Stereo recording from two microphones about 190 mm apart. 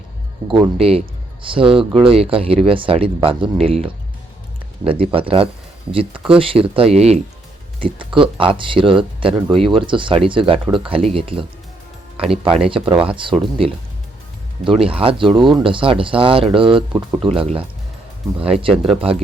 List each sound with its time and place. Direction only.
0.4 s speech: 25° right (ahead or behind)
14.8 s speech: 30° right (ahead or behind)